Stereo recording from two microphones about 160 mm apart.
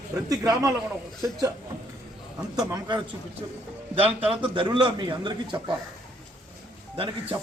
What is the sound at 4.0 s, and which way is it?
A man's voice, 35° right (ahead or behind).